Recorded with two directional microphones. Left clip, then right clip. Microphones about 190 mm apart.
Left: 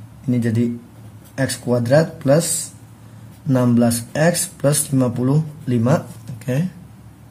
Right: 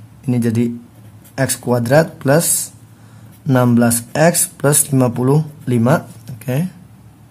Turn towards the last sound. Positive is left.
turn(degrees=-25)  # may be behind; listen again after turning